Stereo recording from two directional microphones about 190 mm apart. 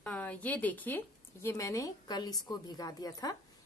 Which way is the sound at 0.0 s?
5° left (ahead or behind).